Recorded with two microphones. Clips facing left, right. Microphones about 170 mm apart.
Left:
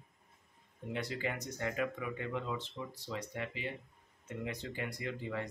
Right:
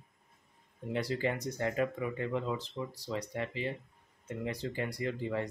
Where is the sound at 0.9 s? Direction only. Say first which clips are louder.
Right 5 dB; 35° right (ahead or behind).